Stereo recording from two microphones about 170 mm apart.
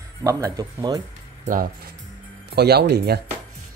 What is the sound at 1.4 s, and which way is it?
Speech, 50° right (ahead or behind).